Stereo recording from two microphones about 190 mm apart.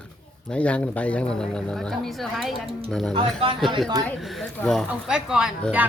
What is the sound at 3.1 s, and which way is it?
Speech, 30° right (ahead or behind).